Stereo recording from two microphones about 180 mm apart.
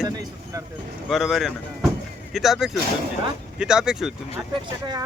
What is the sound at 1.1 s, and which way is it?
Speech, centre (ahead or behind).